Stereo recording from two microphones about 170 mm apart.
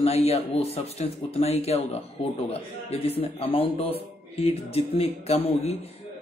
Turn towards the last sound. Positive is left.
turn(degrees=35)  # may be behind; listen again after turning